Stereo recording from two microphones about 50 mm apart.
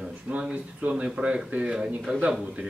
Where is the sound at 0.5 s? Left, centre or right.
Right.